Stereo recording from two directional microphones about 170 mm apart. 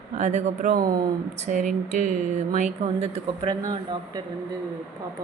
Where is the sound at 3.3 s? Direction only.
25° right (ahead or behind).